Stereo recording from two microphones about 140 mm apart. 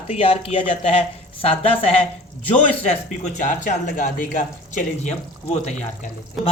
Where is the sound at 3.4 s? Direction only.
65° left (ahead or behind).